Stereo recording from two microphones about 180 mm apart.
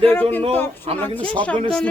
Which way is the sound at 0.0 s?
10° left (ahead or behind).